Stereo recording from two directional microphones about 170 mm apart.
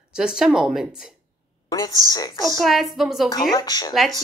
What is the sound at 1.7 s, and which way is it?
Speech, 20° left (ahead or behind).